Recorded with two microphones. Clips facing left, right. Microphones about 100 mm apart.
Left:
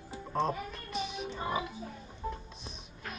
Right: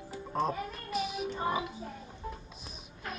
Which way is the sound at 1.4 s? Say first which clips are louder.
Right 2 dB; 15° right (ahead or behind).